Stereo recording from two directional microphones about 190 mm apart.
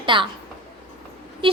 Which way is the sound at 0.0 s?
25° right (ahead or behind).